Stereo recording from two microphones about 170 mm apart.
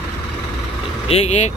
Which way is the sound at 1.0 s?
40° left (ahead or behind).